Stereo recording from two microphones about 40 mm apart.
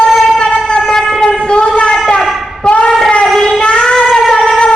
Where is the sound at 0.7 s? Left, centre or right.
Centre.